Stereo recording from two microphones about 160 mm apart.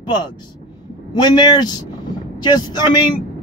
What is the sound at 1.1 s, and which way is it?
Speech, 30° left (ahead or behind).